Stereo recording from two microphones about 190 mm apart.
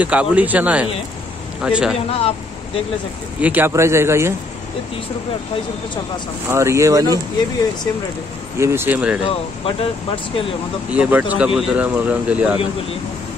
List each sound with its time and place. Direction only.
0.0 s a man's voice: 5° right (ahead or behind)
2.0 s speech: 30° left (ahead or behind)
3.3 s speech: 10° right (ahead or behind)
6.5 s speech: 15° right (ahead or behind)
8.5 s speech: 15° right (ahead or behind)
9.3 s speech: 30° left (ahead or behind)
10.9 s speech: 10° right (ahead or behind)